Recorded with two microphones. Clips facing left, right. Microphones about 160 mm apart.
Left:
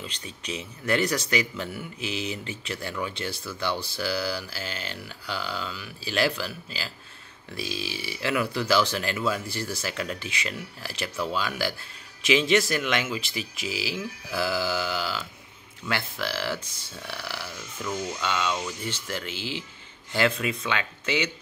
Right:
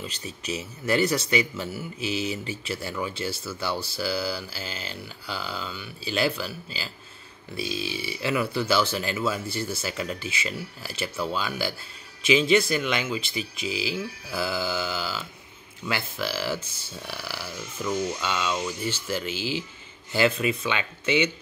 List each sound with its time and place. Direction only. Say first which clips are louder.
0.0 s speech: right 3 dB; 5° right (ahead or behind)